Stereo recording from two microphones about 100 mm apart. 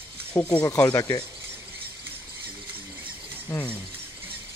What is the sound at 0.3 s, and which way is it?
Speech, 20° left (ahead or behind).